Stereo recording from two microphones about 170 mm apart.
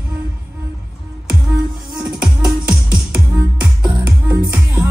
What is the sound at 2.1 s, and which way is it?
Music, 5° right (ahead or behind).